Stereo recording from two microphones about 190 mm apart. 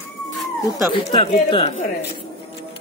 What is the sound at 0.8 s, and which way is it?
Speech, 25° left (ahead or behind).